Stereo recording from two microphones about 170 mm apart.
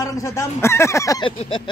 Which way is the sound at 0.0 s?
20° left (ahead or behind).